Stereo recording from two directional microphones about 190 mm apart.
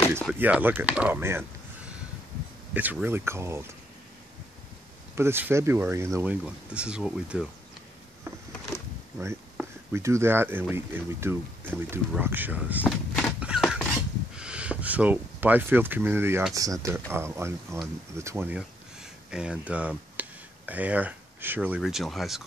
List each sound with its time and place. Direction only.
0.3 s speech: 5° right (ahead or behind)
2.7 s speech: 10° right (ahead or behind)
5.1 s speech: 10° right (ahead or behind)
9.9 s speech: 15° right (ahead or behind)
12.8 s a sound: 10° left (ahead or behind)
13.4 s a sound: 5° right (ahead or behind)
14.3 s speech: 5° right (ahead or behind)